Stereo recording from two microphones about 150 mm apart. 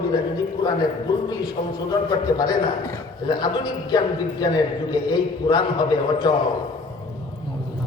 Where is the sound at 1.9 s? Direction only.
25° left (ahead or behind).